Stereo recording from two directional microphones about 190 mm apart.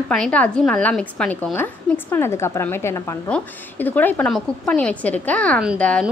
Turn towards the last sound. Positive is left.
turn(degrees=5)  # may be behind; listen again after turning